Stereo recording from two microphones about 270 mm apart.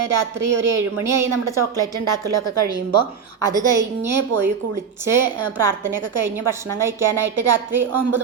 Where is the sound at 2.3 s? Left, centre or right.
Right.